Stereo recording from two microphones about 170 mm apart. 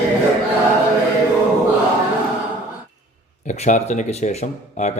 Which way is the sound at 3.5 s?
45° left (ahead or behind).